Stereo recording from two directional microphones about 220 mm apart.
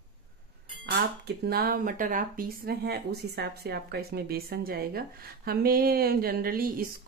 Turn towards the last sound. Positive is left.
turn(degrees=-40)  # may be behind; listen again after turning